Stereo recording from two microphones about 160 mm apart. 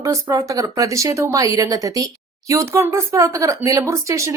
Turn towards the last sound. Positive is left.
turn(degrees=-20)  # may be behind; listen again after turning